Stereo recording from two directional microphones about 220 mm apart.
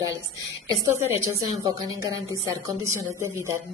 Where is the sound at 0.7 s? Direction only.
15° right (ahead or behind).